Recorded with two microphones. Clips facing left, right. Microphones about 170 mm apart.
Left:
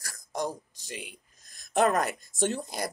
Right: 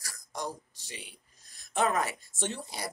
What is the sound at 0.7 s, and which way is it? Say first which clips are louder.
Speech: left 6 dB; 45° left (ahead or behind).